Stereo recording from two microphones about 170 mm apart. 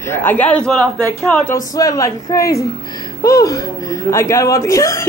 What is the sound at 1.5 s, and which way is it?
Speech, 20° left (ahead or behind).